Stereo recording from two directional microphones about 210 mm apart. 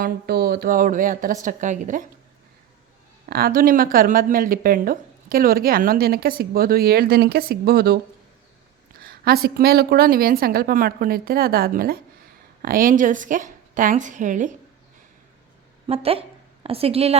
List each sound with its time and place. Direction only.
0.0 s a woman's voice: 50° right (ahead or behind)
3.2 s a woman's voice: 45° right (ahead or behind)
9.0 s a woman's voice: 45° right (ahead or behind)
15.9 s a woman's voice: 30° right (ahead or behind)